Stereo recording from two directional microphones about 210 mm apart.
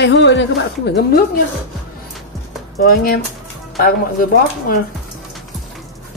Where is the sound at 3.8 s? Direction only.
45° left (ahead or behind).